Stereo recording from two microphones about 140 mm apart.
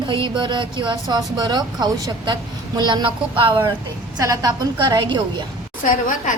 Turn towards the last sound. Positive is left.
turn(degrees=65)  # may be behind; listen again after turning